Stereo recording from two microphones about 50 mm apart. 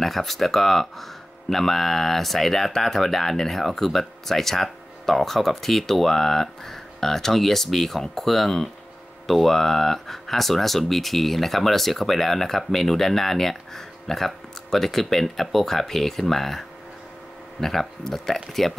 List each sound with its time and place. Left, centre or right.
0.0 s speech: centre